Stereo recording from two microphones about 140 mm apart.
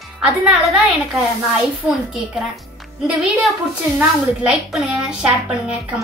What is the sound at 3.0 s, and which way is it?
A woman's voice, centre (ahead or behind).